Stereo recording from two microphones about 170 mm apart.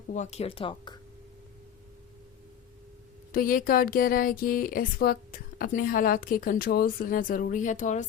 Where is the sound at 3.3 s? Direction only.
55° left (ahead or behind).